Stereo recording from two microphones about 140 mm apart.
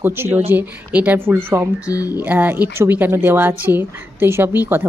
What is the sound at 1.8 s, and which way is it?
Speech, 25° left (ahead or behind).